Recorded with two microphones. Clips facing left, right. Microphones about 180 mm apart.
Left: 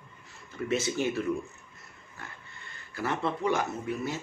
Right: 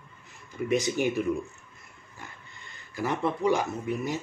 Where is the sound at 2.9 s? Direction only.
15° right (ahead or behind).